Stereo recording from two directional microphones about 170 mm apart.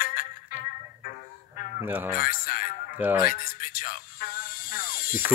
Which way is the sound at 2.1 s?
55° left (ahead or behind).